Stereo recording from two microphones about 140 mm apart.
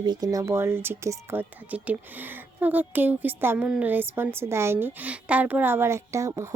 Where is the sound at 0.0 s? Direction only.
30° right (ahead or behind).